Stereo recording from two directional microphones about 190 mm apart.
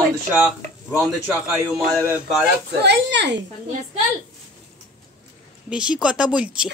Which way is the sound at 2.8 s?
65° right (ahead or behind).